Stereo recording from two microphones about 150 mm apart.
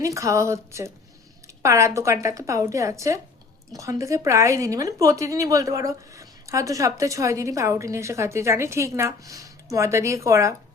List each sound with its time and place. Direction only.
0.0 s a woman's voice: 20° right (ahead or behind)